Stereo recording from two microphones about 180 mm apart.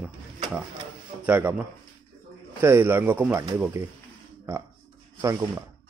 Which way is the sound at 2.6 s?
10° right (ahead or behind).